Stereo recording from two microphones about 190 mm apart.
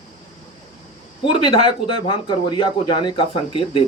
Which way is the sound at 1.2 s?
30° left (ahead or behind).